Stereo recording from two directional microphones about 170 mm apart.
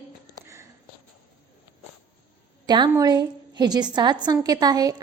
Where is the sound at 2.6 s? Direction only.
25° right (ahead or behind).